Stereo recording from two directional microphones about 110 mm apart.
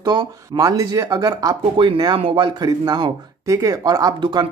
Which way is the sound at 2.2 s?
55° right (ahead or behind).